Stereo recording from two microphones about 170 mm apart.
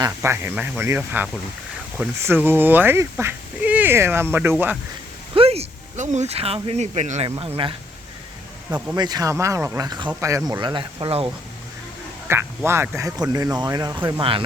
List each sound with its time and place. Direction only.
0.0 s speech: 15° right (ahead or behind)
5.3 s speech: 35° right (ahead or behind)
7.3 s speech: 30° right (ahead or behind)
9.0 s speech: 25° right (ahead or behind)
9.8 s speech: 25° right (ahead or behind)
12.3 s speech: 15° right (ahead or behind); by 14.4 s 30° right (ahead or behind)